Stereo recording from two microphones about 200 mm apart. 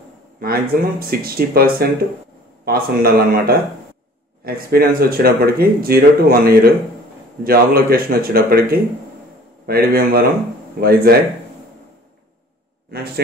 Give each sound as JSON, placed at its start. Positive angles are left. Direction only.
{"t": 0.4, "sound": "speech", "side_deg": -50}
{"t": 12.9, "sound": "speech", "side_deg": -50}